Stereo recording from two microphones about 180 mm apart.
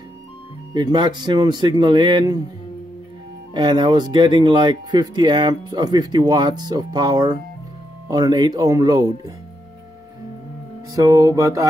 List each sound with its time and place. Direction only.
0.7 s speech: 25° right (ahead or behind)
3.5 s speech: 25° right (ahead or behind)
11.0 s music: 15° right (ahead or behind)